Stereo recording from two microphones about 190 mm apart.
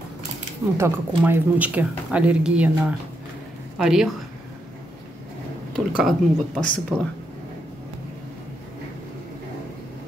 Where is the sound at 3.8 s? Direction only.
5° right (ahead or behind).